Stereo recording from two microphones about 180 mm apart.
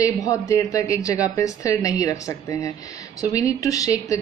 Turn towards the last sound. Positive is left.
turn(degrees=20)  # may be behind; listen again after turning